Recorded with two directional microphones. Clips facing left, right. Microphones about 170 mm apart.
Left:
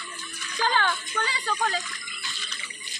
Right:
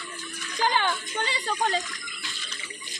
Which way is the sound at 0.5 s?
20° right (ahead or behind).